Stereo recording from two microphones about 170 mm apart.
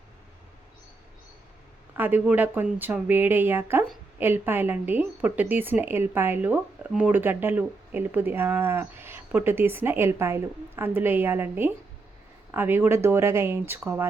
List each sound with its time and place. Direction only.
2.0 s a woman's voice: 10° right (ahead or behind)